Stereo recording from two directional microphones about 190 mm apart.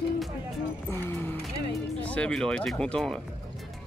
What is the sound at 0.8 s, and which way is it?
Music, 10° left (ahead or behind).